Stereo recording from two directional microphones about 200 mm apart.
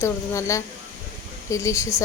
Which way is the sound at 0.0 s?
15° left (ahead or behind).